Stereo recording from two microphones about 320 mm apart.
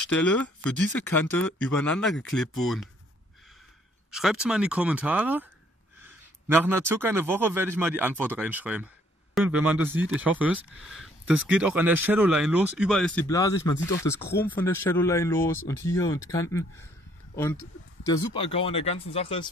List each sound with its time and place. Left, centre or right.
0.1 s speech: left
1.1 s speech: centre
4.1 s speech: centre
6.5 s a man's voice: centre
18.0 s speech: centre